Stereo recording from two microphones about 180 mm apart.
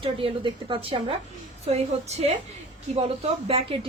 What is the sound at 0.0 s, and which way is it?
A woman's voice, 30° right (ahead or behind).